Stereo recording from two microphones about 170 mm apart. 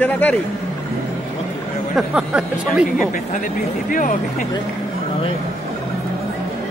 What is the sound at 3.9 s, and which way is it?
Speech, 50° left (ahead or behind).